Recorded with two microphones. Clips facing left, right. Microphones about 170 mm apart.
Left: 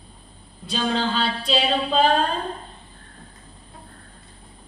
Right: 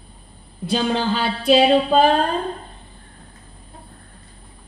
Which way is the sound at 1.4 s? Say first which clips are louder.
Right 11 dB; 60° right (ahead or behind).